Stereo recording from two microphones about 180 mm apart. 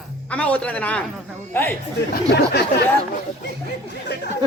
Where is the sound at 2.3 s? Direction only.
65° left (ahead or behind).